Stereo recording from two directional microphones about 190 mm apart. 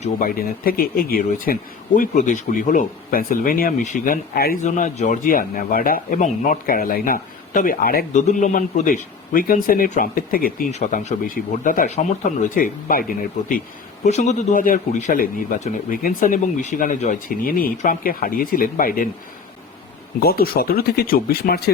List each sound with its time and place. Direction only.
0.0 s speech: 50° left (ahead or behind)
4.6 s speech: 40° left (ahead or behind)
10.7 s speech: 35° left (ahead or behind)
14.0 s speech: 40° left (ahead or behind)
20.1 s speech: 50° left (ahead or behind)